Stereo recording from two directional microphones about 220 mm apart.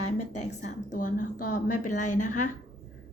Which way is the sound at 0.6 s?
35° left (ahead or behind).